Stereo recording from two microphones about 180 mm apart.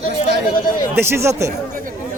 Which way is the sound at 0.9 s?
15° right (ahead or behind).